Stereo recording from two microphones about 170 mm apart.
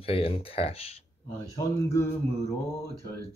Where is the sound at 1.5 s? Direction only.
15° left (ahead or behind).